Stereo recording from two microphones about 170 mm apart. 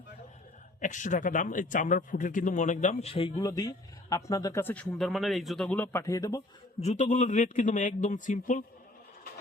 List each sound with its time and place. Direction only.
0.8 s a man's voice: 50° left (ahead or behind)
3.3 s speech: 20° left (ahead or behind)
6.7 s a man's voice: 40° left (ahead or behind)